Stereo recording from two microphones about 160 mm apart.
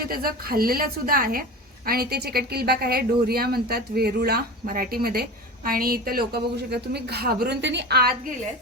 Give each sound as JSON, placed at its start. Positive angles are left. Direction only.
{"t": 0.0, "sound": "a woman's voice", "side_deg": -65}